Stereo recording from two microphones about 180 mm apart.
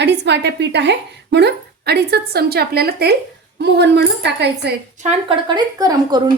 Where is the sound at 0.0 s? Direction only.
70° right (ahead or behind).